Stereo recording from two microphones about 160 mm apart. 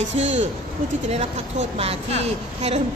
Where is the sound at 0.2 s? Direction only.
40° right (ahead or behind).